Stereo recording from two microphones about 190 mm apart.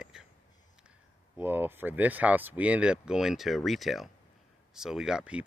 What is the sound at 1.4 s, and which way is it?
Speech, 10° right (ahead or behind).